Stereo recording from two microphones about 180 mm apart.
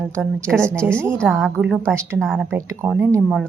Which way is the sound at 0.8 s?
5° left (ahead or behind).